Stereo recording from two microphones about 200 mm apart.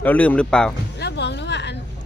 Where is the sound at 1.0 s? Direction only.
55° left (ahead or behind).